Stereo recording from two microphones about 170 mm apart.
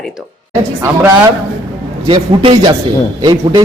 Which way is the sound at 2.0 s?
30° right (ahead or behind).